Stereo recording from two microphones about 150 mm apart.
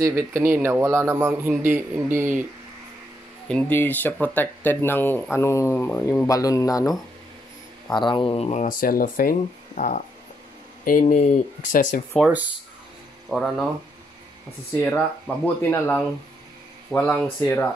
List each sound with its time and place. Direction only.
0.0 s a man's voice: 15° right (ahead or behind)
3.4 s speech: 5° left (ahead or behind)
6.2 s speech: 25° left (ahead or behind); by 8.6 s 45° left (ahead or behind)
8.6 s speech: 75° left (ahead or behind); by 10.0 s 55° left (ahead or behind)
10.8 s speech: 65° left (ahead or behind)
12.2 s a man's voice: 10° right (ahead or behind)
13.3 s speech: 5° left (ahead or behind)
14.9 s speech: 10° left (ahead or behind)